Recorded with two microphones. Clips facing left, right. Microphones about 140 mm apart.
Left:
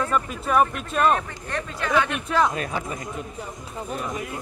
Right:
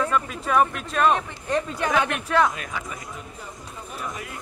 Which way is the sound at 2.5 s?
35° left (ahead or behind).